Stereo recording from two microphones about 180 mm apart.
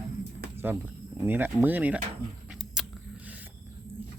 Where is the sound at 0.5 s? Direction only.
10° right (ahead or behind).